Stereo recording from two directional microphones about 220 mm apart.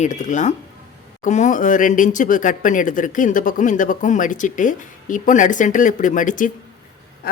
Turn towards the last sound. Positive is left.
turn(degrees=35)  # may be behind; listen again after turning